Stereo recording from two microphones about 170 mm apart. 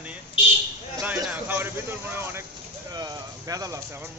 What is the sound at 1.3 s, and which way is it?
A man's voice, 10° right (ahead or behind).